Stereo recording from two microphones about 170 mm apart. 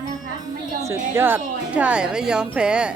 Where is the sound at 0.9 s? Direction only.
15° right (ahead or behind).